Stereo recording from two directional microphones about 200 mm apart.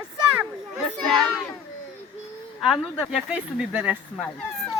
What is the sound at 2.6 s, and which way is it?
Speech, centre (ahead or behind).